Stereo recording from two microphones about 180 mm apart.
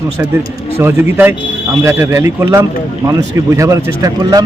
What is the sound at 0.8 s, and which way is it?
Speech, 15° right (ahead or behind).